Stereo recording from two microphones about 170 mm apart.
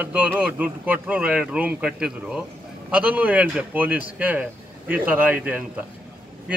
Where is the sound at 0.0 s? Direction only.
10° right (ahead or behind).